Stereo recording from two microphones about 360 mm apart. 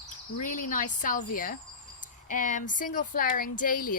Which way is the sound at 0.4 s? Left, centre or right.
Left.